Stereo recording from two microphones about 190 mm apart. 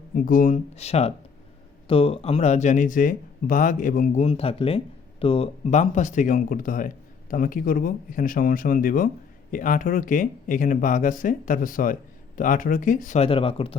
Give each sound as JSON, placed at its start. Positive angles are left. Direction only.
{"t": 0.1, "sound": "speech", "side_deg": 45}